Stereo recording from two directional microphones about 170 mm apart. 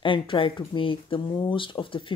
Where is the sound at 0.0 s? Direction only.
30° left (ahead or behind).